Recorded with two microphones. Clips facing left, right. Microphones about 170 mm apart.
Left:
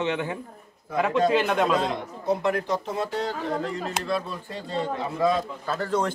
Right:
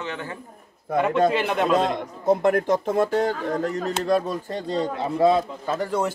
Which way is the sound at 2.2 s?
50° right (ahead or behind).